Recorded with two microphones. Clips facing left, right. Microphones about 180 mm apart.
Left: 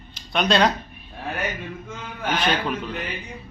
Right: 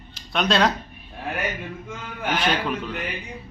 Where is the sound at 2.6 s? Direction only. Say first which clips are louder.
Even; centre (ahead or behind).